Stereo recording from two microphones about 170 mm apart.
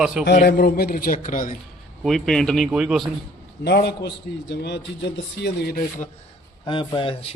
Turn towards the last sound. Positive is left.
turn(degrees=30)  # may be behind; listen again after turning